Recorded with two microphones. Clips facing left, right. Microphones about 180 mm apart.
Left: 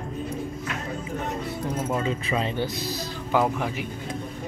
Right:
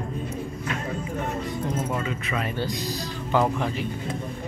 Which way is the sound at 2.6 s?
15° right (ahead or behind).